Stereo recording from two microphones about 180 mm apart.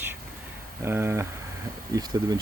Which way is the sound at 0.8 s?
15° right (ahead or behind).